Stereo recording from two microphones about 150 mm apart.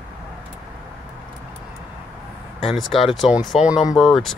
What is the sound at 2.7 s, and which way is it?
Speech, centre (ahead or behind).